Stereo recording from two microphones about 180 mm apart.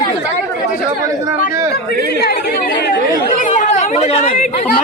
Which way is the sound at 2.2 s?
60° left (ahead or behind).